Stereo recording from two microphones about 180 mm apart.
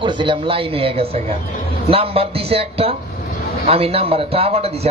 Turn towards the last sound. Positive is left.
turn(degrees=-35)  # may be behind; listen again after turning